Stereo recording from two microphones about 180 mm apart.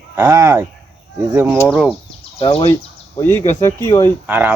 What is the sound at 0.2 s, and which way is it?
Speech, 15° right (ahead or behind).